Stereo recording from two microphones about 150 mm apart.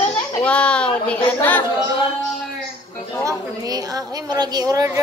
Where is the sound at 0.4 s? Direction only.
10° left (ahead or behind).